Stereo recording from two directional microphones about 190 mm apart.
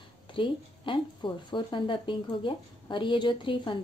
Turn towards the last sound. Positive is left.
turn(degrees=25)  # may be behind; listen again after turning